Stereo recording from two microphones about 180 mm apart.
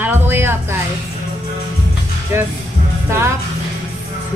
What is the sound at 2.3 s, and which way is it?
Speech, 15° right (ahead or behind).